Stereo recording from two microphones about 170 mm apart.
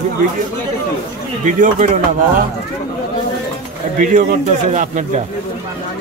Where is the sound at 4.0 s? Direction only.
50° right (ahead or behind).